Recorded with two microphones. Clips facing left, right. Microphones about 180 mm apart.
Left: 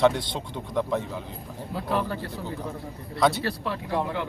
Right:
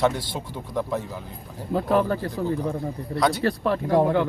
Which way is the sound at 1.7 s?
50° right (ahead or behind).